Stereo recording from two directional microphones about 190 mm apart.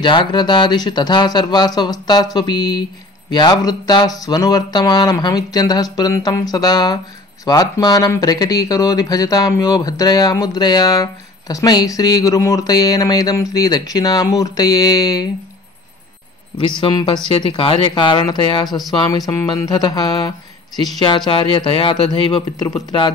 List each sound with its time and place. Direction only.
0.0 s speech: 25° left (ahead or behind)
16.5 s speech: 25° left (ahead or behind)